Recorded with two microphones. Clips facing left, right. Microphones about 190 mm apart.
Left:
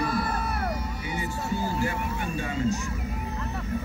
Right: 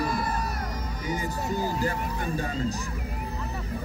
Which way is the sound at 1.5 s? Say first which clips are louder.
Even; 40° right (ahead or behind).